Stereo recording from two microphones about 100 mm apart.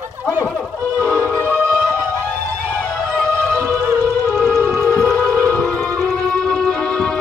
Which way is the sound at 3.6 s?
25° right (ahead or behind).